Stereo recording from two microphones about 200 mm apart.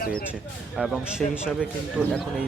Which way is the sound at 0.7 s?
Centre (ahead or behind).